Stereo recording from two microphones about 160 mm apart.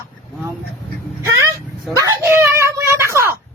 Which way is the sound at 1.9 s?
20° right (ahead or behind).